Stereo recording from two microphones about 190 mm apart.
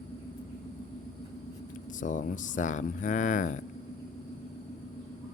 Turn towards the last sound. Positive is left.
turn(degrees=40)  # may be behind; listen again after turning